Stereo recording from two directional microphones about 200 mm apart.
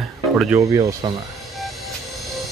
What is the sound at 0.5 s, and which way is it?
Speech, 15° right (ahead or behind).